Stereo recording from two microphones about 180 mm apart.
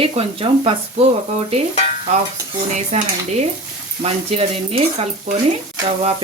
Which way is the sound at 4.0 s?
30° right (ahead or behind).